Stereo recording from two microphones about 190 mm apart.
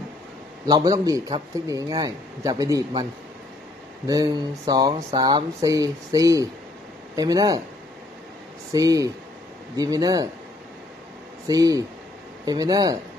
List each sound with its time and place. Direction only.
0.7 s a man's voice: 20° right (ahead or behind)
4.1 s a man's voice: 20° right (ahead or behind)
8.7 s a man's voice: 20° right (ahead or behind)
11.4 s a man's voice: 20° right (ahead or behind)